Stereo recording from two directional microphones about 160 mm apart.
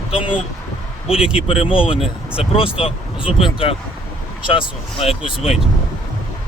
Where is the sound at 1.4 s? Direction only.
35° left (ahead or behind).